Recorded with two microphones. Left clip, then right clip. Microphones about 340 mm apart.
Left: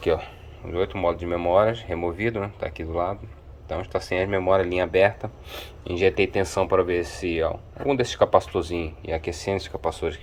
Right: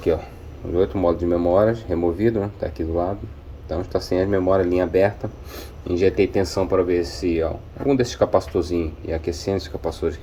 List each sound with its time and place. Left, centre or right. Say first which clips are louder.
0.7 s speech: right 4 dB; centre